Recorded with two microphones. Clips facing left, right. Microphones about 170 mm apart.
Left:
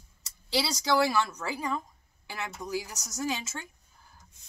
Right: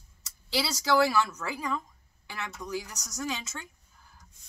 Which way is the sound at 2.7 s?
5° left (ahead or behind).